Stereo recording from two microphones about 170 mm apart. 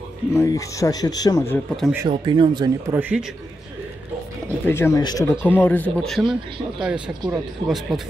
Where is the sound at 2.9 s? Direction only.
10° right (ahead or behind).